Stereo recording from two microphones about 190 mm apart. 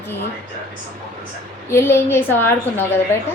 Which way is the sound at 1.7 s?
10° left (ahead or behind).